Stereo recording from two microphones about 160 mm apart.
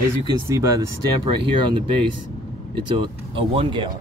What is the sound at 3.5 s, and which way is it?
Speech, 35° right (ahead or behind).